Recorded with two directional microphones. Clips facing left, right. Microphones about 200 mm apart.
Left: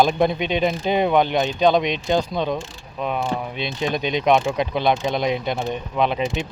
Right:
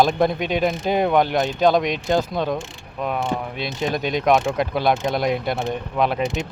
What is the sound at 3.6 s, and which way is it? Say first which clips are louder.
Speech: even; centre (ahead or behind).